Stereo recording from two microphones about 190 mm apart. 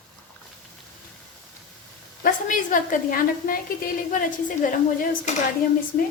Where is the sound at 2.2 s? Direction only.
45° left (ahead or behind).